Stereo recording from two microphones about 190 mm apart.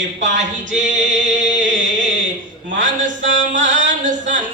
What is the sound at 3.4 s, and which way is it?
Mantra, 70° right (ahead or behind).